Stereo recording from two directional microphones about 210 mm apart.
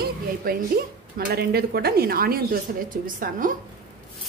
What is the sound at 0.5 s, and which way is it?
A woman's voice, 45° right (ahead or behind).